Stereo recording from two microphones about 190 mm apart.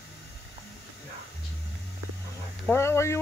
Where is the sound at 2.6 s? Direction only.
15° left (ahead or behind).